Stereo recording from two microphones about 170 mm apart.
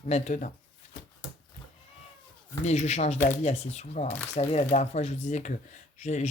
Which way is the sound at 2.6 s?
40° left (ahead or behind).